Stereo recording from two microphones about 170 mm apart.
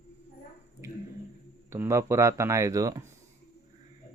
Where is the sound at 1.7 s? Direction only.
15° right (ahead or behind).